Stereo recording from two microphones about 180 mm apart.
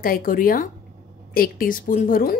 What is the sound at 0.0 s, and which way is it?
Speech, 50° left (ahead or behind).